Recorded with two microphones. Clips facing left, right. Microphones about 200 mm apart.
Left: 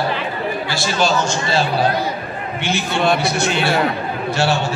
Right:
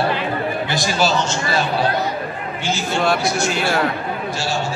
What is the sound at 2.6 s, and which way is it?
Speech, 65° left (ahead or behind).